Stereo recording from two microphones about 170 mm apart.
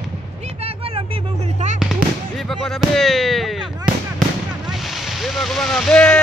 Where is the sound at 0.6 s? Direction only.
35° right (ahead or behind).